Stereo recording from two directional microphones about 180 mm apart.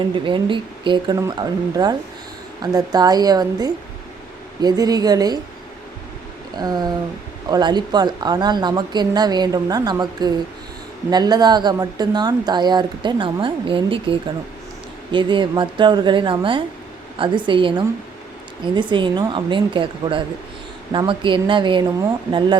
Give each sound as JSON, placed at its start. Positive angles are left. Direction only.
{"t": 0.0, "sound": "speech", "side_deg": -25}
{"t": 6.6, "sound": "speech", "side_deg": -20}